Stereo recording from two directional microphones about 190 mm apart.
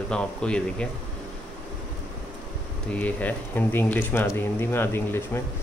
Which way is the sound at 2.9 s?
10° left (ahead or behind).